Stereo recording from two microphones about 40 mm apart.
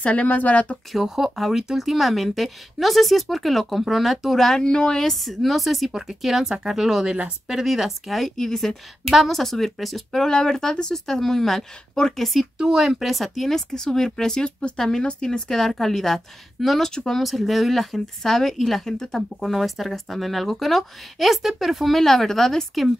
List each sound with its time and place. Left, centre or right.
0.0 s speech: left
1.0 s speech: centre
4.4 s speech: centre
4.6 s speech: left
5.1 s speech: centre
8.4 s speech: centre
10.3 s speech: centre
12.5 s speech: centre
12.8 s speech: centre
14.4 s speech: left
17.3 s speech: centre